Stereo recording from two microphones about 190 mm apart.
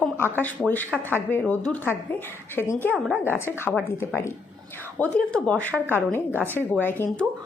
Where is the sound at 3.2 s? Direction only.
10° left (ahead or behind).